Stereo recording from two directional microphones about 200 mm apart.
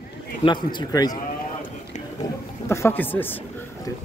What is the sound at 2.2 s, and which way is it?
Wild animals, 15° left (ahead or behind).